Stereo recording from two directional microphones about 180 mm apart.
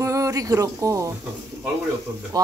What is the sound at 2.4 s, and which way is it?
Speech, 20° right (ahead or behind).